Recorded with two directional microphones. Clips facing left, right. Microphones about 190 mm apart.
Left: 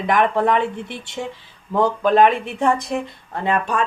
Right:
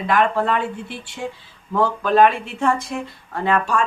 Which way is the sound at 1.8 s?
20° left (ahead or behind).